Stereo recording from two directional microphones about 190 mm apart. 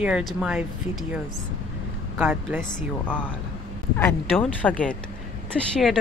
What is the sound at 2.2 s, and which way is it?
Speech, 10° right (ahead or behind).